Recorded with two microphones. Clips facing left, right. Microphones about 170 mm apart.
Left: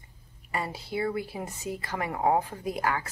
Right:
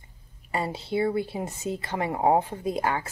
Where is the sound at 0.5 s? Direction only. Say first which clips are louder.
Right 4 dB; 25° right (ahead or behind).